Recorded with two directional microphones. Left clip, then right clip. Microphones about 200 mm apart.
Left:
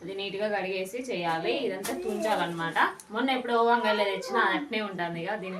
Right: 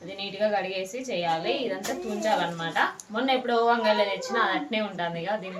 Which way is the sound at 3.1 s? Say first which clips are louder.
Right 2 dB; 10° left (ahead or behind).